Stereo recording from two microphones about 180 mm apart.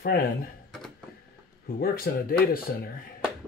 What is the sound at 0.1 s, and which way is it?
Speech, 60° left (ahead or behind).